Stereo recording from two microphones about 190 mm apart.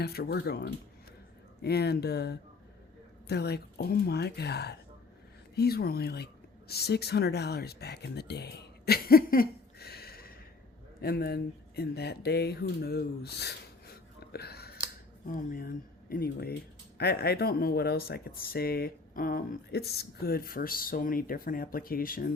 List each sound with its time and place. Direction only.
0.0 s speech: 55° left (ahead or behind)